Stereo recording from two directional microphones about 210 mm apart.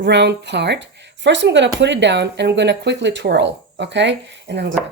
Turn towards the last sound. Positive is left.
turn(degrees=-55)  # may be behind; listen again after turning